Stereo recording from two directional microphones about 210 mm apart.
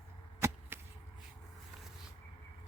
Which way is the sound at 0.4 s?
15° right (ahead or behind).